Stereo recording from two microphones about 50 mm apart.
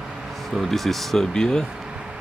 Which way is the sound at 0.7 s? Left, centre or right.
Centre.